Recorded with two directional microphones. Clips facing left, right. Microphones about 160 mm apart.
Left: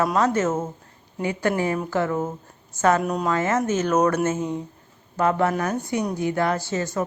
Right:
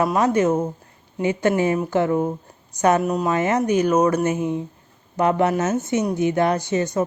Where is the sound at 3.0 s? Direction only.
5° right (ahead or behind).